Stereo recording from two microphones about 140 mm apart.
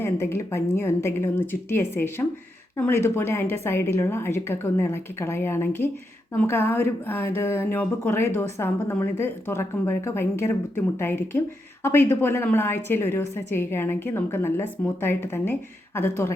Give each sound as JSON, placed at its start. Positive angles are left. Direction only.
{"t": 0.0, "sound": "speech", "side_deg": 20}